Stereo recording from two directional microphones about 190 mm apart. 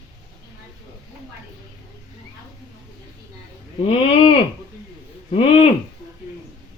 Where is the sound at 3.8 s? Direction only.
30° left (ahead or behind).